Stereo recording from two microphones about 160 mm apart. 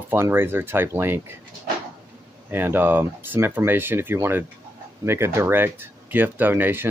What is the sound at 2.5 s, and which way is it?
Speech, 15° right (ahead or behind).